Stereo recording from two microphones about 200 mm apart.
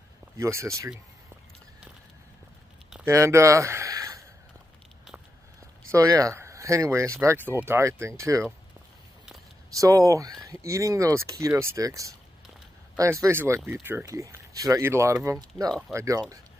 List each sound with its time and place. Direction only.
0.4 s speech: 15° right (ahead or behind)
2.9 s a sound: 10° right (ahead or behind)
5.9 s speech: 15° right (ahead or behind)
9.8 s speech: 15° right (ahead or behind)